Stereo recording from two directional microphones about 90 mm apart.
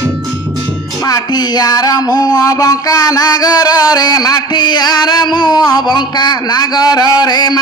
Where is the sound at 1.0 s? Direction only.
45° left (ahead or behind).